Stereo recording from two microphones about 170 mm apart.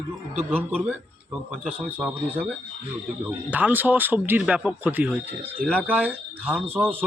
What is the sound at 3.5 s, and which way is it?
Speech, 10° right (ahead or behind).